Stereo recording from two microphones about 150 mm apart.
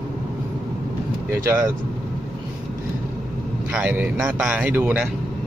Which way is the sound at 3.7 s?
10° right (ahead or behind).